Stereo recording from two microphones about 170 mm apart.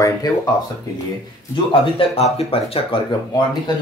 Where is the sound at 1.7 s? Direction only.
30° left (ahead or behind).